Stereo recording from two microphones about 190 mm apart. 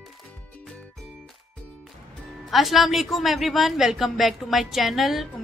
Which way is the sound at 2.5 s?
Centre (ahead or behind).